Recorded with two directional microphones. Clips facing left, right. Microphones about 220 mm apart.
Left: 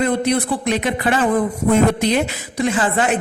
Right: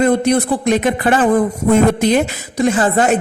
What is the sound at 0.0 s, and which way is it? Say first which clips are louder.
A man's voice: right 5 dB; 45° right (ahead or behind).